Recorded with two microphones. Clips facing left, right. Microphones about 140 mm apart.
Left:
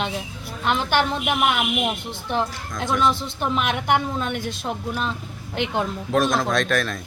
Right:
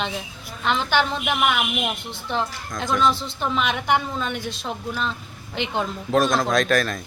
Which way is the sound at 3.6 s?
55° left (ahead or behind).